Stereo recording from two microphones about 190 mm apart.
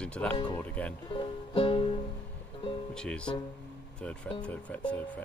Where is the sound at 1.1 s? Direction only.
25° left (ahead or behind).